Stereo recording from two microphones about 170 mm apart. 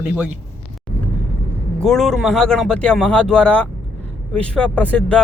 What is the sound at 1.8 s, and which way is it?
Speech, centre (ahead or behind).